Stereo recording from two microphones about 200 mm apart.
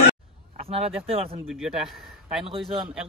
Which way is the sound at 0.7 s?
30° right (ahead or behind).